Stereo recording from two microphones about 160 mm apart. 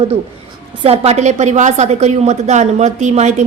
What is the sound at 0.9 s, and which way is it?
A woman's voice, 40° right (ahead or behind).